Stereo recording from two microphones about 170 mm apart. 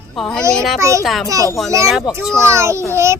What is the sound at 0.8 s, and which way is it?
Speech, 20° right (ahead or behind).